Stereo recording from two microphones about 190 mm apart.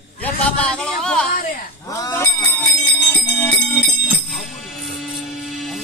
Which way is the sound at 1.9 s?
15° left (ahead or behind).